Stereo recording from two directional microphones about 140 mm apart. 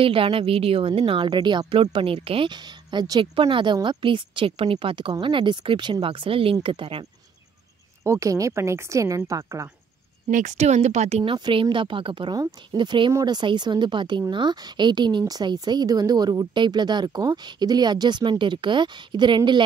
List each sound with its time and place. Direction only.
0.0 s a woman's voice: 40° right (ahead or behind)
8.0 s speech: 20° right (ahead or behind)
10.3 s speech: 60° right (ahead or behind)
11.3 s a woman's voice: 30° right (ahead or behind)